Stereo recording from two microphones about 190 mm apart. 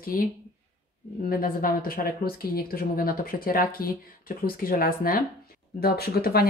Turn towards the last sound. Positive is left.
turn(degrees=55)  # may be behind; listen again after turning